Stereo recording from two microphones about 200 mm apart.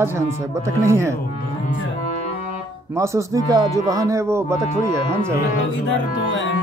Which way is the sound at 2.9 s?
15° right (ahead or behind).